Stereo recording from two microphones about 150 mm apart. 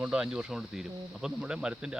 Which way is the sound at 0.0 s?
5° right (ahead or behind).